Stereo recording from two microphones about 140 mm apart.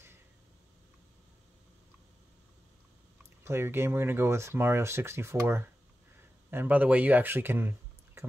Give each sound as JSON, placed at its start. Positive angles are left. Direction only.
{"t": 3.4, "sound": "speech", "side_deg": -15}